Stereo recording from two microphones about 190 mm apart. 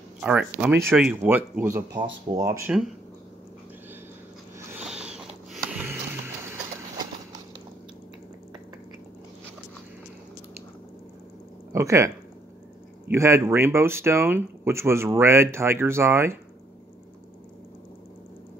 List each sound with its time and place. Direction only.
0.2 s speech: 5° right (ahead or behind)
4.6 s music: 5° right (ahead or behind)
11.7 s speech: 15° right (ahead or behind)
13.1 s speech: 15° right (ahead or behind)